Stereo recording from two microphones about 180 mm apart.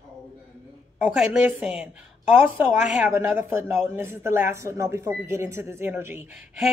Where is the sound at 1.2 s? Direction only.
5° right (ahead or behind).